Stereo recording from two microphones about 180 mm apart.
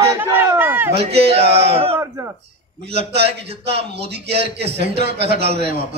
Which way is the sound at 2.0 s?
15° right (ahead or behind).